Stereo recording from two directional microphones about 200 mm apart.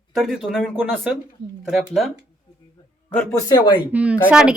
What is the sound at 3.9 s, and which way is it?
Speech, 5° right (ahead or behind).